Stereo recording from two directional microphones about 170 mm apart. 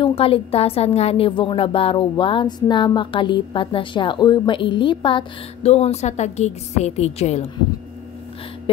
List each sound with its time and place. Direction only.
0.0 s a woman's voice: 35° left (ahead or behind)